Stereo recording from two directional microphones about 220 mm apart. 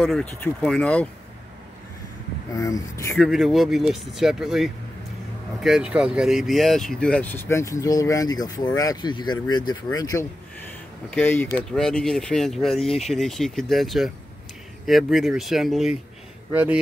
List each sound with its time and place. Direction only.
0.0 s speech: 5° left (ahead or behind)
2.5 s speech: 15° left (ahead or behind)
3.3 s speech: centre (ahead or behind)